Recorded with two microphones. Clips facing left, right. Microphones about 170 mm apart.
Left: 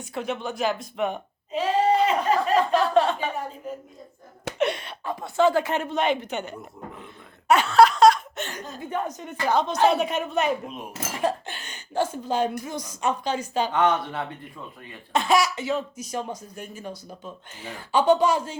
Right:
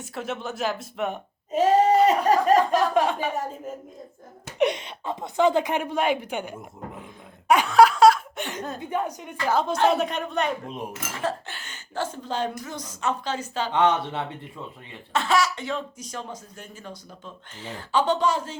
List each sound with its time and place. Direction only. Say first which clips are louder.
0.0 s speech: left 2 dB; centre (ahead or behind)
1.5 s a sound: right 3 dB; 45° right (ahead or behind)
2.7 s speech: left 1 dB; 10° right (ahead or behind)
4.5 s speech: right 2 dB; 15° right (ahead or behind)
7.0 s laughter: right 1 dB; 10° right (ahead or behind)
8.8 s speech: left 1 dB; 10° right (ahead or behind)
11.1 s speech: left 5 dB; 15° left (ahead or behind)
13.7 s speech: right 3 dB; 25° right (ahead or behind)
15.1 s speech: left 2 dB; 15° left (ahead or behind)